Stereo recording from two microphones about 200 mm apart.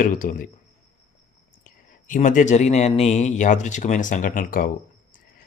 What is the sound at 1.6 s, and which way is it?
Speech, 40° left (ahead or behind).